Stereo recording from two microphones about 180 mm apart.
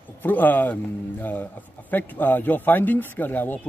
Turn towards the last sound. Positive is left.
turn(degrees=10)  # may be behind; listen again after turning